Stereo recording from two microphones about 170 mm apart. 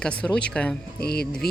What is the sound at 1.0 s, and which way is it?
Music, 65° left (ahead or behind).